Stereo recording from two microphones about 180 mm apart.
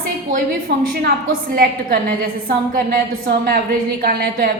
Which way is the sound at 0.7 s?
65° right (ahead or behind).